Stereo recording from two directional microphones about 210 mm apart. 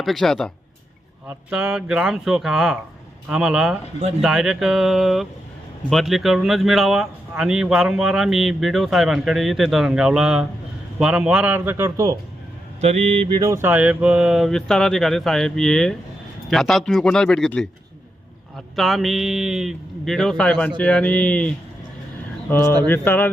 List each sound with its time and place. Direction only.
0.0 s a man's voice: centre (ahead or behind)
12.8 s mantra: 30° right (ahead or behind)
13.4 s speech: 10° right (ahead or behind); by 22.7 s 10° left (ahead or behind)
22.9 s music: 10° left (ahead or behind)